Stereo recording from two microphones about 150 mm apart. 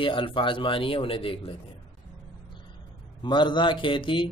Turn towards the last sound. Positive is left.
turn(degrees=35)  # may be behind; listen again after turning